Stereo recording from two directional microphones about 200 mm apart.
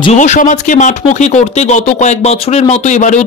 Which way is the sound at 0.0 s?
35° left (ahead or behind).